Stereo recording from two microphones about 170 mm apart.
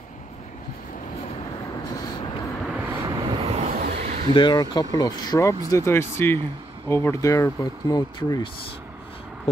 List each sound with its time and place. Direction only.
2.6 s vehicle: 10° right (ahead or behind)
3.3 s vehicle: 30° right (ahead or behind)
3.8 s a sound: 55° right (ahead or behind)
4.3 s speech: 25° left (ahead or behind)